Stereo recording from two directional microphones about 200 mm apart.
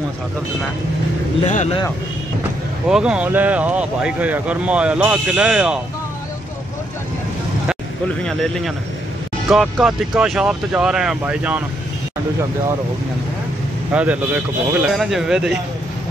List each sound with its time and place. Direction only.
1.4 s speech: 35° left (ahead or behind)
2.9 s speech: 5° right (ahead or behind)
8.2 s speech: 5° left (ahead or behind)
13.9 s speech: 5° right (ahead or behind)